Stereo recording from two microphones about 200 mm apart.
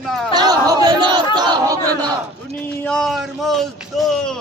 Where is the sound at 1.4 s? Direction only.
20° right (ahead or behind).